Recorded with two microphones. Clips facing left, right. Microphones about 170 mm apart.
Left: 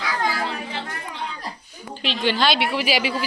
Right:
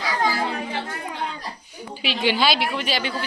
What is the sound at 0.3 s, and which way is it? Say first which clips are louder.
Children playing: right 2 dB; 25° right (ahead or behind).